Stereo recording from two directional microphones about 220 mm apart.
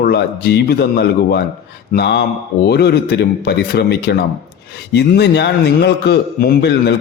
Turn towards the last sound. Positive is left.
turn(degrees=50)  # may be behind; listen again after turning